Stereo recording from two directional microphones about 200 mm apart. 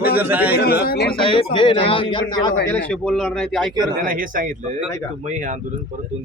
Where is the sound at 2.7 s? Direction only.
5° left (ahead or behind).